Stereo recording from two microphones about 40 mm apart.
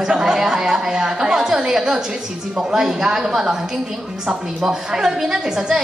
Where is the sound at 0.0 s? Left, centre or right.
Centre.